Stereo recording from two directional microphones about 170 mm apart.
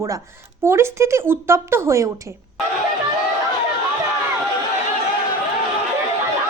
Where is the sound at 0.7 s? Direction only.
15° right (ahead or behind).